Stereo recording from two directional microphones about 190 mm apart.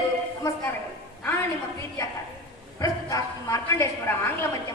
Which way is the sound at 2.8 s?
15° left (ahead or behind).